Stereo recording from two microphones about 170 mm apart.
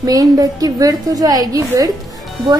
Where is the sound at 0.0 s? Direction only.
20° right (ahead or behind).